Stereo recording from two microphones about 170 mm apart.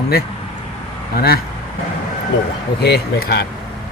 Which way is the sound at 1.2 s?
65° left (ahead or behind).